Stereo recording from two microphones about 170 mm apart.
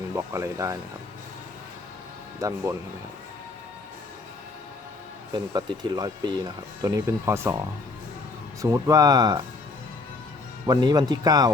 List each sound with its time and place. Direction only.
0.2 s speech: 15° right (ahead or behind)
2.4 s speech: 20° right (ahead or behind)
5.3 s speech: 25° right (ahead or behind)
8.6 s speech: 20° right (ahead or behind)
10.7 s speech: 25° right (ahead or behind)